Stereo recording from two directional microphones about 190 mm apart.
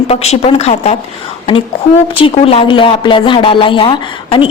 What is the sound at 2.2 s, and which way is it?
A woman's voice, 30° left (ahead or behind).